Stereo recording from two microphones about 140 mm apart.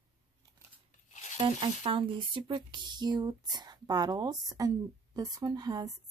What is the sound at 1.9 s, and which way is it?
Speech, 35° right (ahead or behind).